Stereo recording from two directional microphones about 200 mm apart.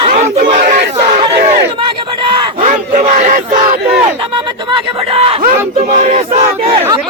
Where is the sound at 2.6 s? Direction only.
40° right (ahead or behind).